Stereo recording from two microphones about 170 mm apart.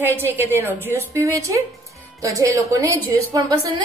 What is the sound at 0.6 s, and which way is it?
A woman's voice, 10° right (ahead or behind).